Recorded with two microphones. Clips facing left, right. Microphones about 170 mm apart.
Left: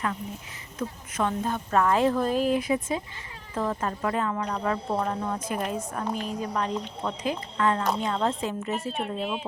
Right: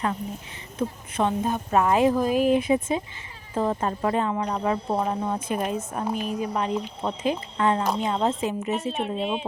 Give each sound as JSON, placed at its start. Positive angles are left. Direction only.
{"t": 0.8, "sound": "a woman's voice", "side_deg": -25}
{"t": 8.9, "sound": "speech", "side_deg": 0}